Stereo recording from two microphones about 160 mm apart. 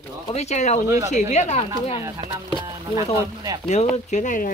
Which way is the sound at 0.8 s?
20° right (ahead or behind).